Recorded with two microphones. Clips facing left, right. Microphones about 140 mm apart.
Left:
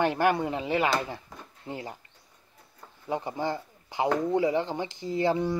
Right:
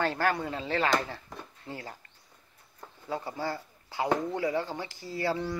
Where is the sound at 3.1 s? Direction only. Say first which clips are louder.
Left 4 dB; 20° left (ahead or behind).